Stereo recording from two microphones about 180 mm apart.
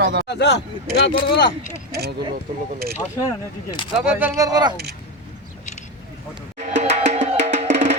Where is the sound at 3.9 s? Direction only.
5° right (ahead or behind); by 4.8 s 20° right (ahead or behind).